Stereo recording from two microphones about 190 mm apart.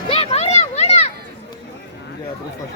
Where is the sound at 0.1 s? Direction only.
30° left (ahead or behind).